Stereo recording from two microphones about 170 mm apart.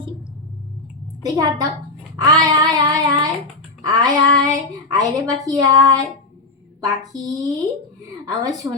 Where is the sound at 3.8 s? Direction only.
25° right (ahead or behind).